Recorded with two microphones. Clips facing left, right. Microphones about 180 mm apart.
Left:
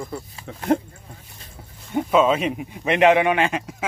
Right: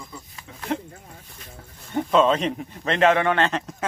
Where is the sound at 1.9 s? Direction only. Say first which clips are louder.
Left 1 dB; 10° left (ahead or behind).